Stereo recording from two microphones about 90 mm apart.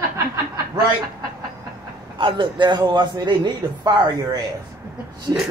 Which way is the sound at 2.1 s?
65° right (ahead or behind).